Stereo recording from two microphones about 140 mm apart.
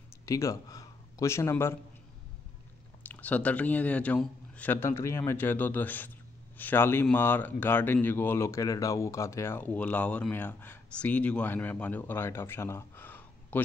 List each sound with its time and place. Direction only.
0.2 s speech: 20° left (ahead or behind)
3.0 s speech: 10° left (ahead or behind)